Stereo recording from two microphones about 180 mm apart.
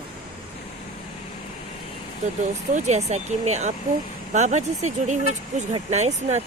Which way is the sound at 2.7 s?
40° right (ahead or behind).